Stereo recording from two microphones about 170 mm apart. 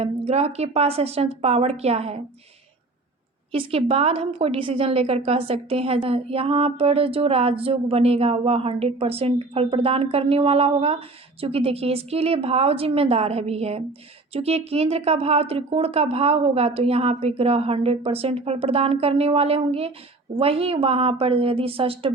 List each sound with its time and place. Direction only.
0.0 s a woman's voice: 40° right (ahead or behind)
3.5 s a woman's voice: 35° right (ahead or behind)